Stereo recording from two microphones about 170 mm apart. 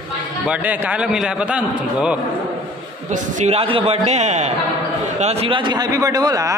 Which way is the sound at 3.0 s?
45° right (ahead or behind).